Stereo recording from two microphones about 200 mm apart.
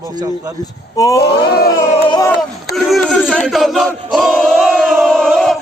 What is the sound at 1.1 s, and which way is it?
Speech, 55° left (ahead or behind).